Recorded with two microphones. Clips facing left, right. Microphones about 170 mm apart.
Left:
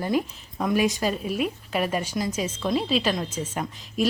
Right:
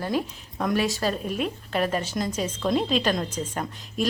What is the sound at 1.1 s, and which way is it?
A woman's voice, 5° left (ahead or behind).